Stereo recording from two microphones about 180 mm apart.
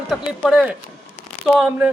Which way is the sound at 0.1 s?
Centre (ahead or behind).